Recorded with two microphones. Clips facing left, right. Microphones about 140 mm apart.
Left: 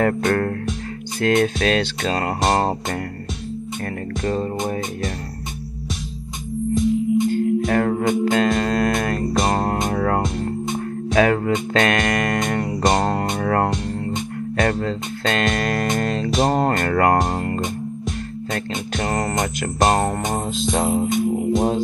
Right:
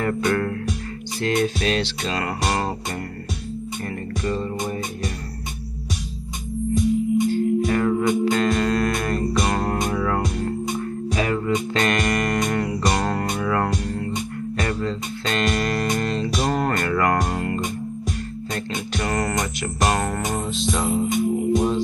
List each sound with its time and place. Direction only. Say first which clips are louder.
0.0 s music: left 3 dB; 45° left (ahead or behind)
4.2 s music: left 3 dB; 50° left (ahead or behind)
6.7 s music: left 1 dB; centre (ahead or behind)
7.2 s music: left 1 dB; 50° left (ahead or behind)
9.8 s music: left 2 dB; 45° left (ahead or behind)
11.1 s music: left 6 dB; 55° left (ahead or behind)
12.8 s music: left 4 dB; 35° left (ahead or behind)
13.4 s music: left 3 dB; 45° left (ahead or behind)
17.1 s music: left 3 dB; 35° left (ahead or behind)
19.0 s music: left 1 dB; 30° left (ahead or behind)
19.3 s music: left 3 dB; 45° left (ahead or behind)
19.9 s music: left 4 dB; 30° left (ahead or behind)
20.2 s music: left 2 dB; 45° left (ahead or behind)